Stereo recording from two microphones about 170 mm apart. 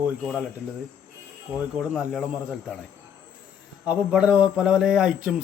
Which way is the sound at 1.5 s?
5° right (ahead or behind).